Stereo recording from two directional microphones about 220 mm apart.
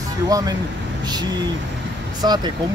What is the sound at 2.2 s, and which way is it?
Speech, 20° right (ahead or behind).